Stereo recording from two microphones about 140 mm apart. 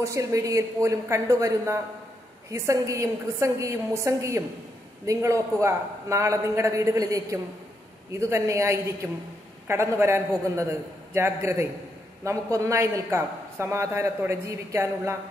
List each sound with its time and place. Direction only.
0.0 s a man's voice: 20° right (ahead or behind)